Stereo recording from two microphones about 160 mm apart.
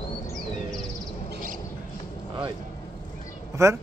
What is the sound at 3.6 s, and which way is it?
Speech, 20° right (ahead or behind).